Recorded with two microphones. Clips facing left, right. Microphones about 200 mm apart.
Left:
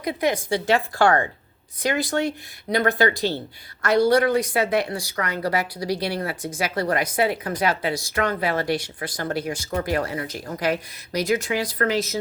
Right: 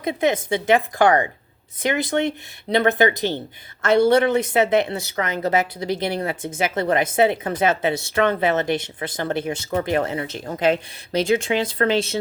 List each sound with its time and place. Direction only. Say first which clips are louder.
0.0 s speech: right 3 dB; 25° right (ahead or behind)